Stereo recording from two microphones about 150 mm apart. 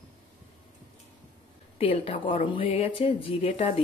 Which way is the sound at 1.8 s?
40° left (ahead or behind).